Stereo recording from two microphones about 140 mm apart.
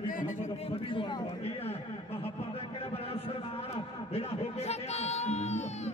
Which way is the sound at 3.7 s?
45° left (ahead or behind).